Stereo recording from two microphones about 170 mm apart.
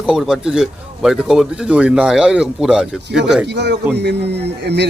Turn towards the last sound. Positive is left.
turn(degrees=-80)